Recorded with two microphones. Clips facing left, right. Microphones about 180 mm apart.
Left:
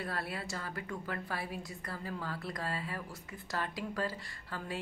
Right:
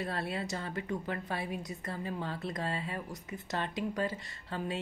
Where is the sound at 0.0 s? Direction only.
25° right (ahead or behind).